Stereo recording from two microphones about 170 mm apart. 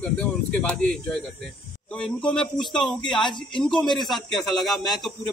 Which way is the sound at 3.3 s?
25° left (ahead or behind).